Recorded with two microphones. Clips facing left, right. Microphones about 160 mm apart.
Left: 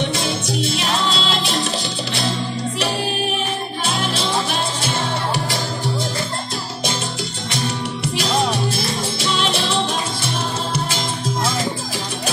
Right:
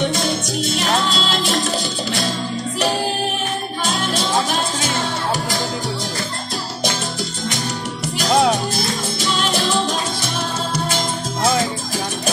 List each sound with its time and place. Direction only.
0.7 s music: 45° right (ahead or behind)